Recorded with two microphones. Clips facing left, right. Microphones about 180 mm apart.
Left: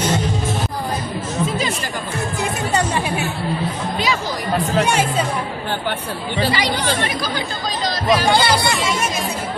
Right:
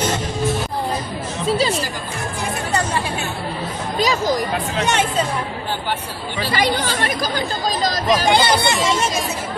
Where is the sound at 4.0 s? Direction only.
40° right (ahead or behind).